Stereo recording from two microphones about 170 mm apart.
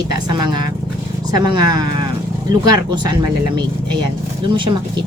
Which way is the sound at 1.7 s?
25° right (ahead or behind).